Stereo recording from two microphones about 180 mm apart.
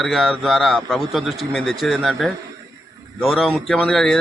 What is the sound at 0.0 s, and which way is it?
A man's voice, centre (ahead or behind).